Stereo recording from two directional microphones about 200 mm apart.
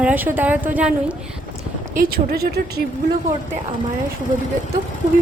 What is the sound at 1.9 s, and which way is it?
Speech, 45° right (ahead or behind).